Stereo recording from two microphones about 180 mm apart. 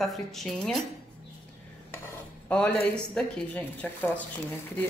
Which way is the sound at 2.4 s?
5° left (ahead or behind).